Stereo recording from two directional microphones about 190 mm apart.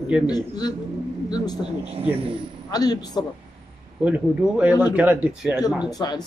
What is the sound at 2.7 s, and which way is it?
Speech, 20° left (ahead or behind).